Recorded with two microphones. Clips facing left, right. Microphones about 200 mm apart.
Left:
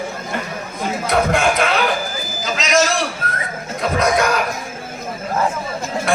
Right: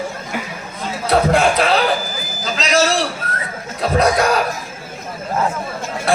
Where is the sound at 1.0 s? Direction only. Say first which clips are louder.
Right 3 dB; 35° right (ahead or behind).